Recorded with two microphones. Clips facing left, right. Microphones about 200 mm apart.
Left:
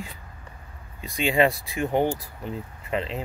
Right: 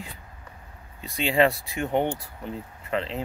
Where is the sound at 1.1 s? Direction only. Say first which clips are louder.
Even; 5° left (ahead or behind).